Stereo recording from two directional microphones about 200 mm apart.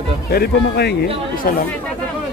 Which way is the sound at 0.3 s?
55° left (ahead or behind).